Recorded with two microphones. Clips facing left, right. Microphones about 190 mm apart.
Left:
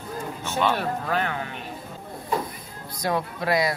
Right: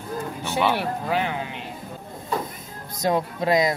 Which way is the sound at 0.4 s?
15° right (ahead or behind).